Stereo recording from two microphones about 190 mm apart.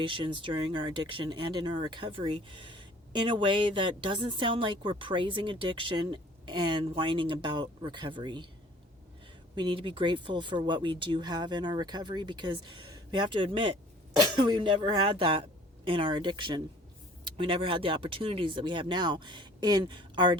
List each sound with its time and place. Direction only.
0.0 s speech: 25° right (ahead or behind)
9.6 s speech: 25° right (ahead or behind)